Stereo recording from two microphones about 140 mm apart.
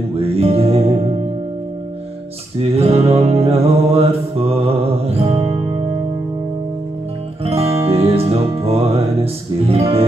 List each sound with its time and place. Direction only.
0.2 s music: 45° right (ahead or behind)
2.7 s music: 45° right (ahead or behind)
7.4 s music: 45° right (ahead or behind)